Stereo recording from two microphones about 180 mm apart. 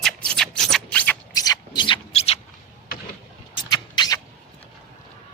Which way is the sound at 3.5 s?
25° left (ahead or behind).